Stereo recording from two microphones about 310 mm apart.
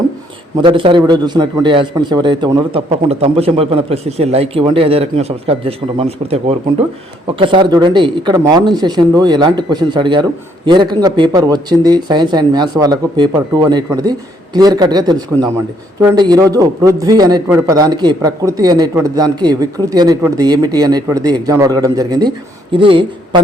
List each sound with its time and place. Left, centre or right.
0.5 s speech: centre